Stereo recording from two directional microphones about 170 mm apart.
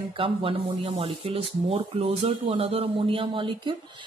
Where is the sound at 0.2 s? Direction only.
30° right (ahead or behind).